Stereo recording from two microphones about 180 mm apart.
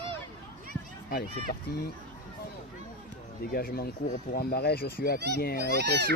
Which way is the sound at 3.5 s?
55° left (ahead or behind).